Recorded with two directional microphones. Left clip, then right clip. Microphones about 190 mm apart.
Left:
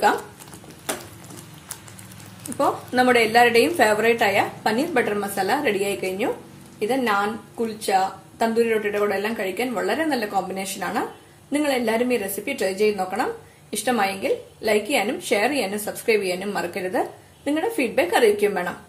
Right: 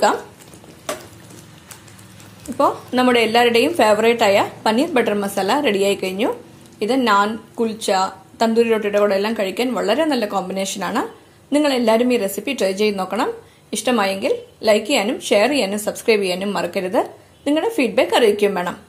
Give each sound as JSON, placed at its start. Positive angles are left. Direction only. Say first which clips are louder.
{"t": 2.5, "sound": "a woman's voice", "louder": "right 4 dB", "side_deg": -25}